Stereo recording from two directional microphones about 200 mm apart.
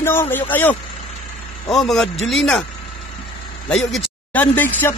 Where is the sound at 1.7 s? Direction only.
Centre (ahead or behind).